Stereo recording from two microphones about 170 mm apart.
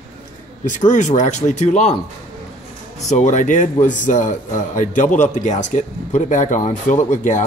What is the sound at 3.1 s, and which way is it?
A man's voice, 45° left (ahead or behind).